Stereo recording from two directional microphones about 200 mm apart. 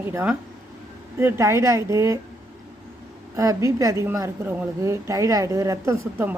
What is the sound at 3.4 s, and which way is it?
A woman's voice, 15° right (ahead or behind).